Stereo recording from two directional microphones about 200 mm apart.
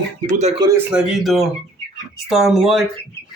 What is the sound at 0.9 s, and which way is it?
Speech, 5° right (ahead or behind).